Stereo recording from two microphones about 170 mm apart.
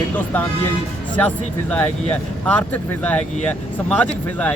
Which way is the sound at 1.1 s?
10° left (ahead or behind).